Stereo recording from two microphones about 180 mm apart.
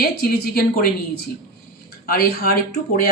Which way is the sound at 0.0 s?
60° left (ahead or behind).